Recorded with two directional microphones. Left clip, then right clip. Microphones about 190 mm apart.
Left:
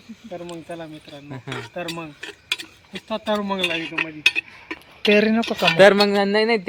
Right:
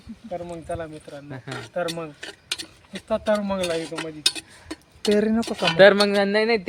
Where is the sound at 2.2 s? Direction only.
40° right (ahead or behind).